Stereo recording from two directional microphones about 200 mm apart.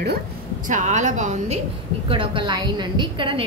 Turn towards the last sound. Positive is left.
turn(degrees=-25)  # may be behind; listen again after turning